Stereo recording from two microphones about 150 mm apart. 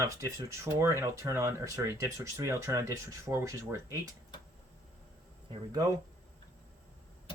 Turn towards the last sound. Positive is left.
turn(degrees=-25)  # may be behind; listen again after turning